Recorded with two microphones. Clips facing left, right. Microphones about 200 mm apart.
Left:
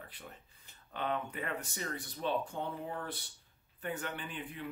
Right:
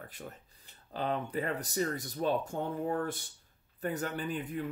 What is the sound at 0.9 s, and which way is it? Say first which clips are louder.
Speech: right 4 dB; 35° right (ahead or behind).